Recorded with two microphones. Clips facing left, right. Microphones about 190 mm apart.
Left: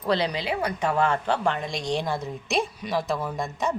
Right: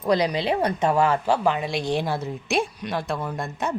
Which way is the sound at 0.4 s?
30° right (ahead or behind).